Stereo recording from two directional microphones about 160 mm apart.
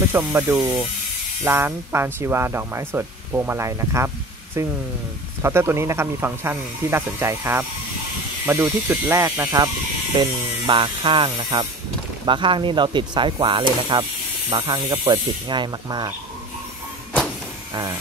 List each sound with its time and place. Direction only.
0.1 s speech: 20° right (ahead or behind)